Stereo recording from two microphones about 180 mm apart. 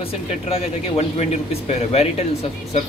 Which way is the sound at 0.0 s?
30° left (ahead or behind).